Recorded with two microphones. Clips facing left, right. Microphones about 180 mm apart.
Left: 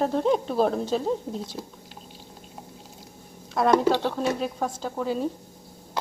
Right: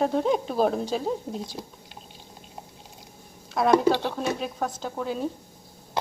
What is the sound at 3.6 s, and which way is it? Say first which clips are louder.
Speech: even; 5° right (ahead or behind).